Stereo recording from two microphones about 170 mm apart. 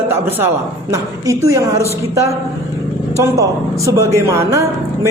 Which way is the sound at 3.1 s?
15° right (ahead or behind).